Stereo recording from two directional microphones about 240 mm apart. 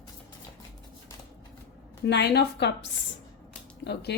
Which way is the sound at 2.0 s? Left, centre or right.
Left.